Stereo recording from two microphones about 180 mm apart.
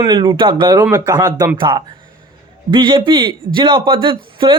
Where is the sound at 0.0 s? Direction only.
25° right (ahead or behind).